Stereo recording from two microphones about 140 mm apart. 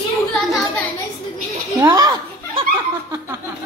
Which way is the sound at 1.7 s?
20° right (ahead or behind).